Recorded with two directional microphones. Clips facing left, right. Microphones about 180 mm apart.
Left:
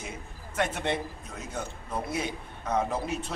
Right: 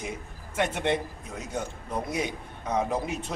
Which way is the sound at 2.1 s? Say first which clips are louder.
Right 2 dB; 15° right (ahead or behind).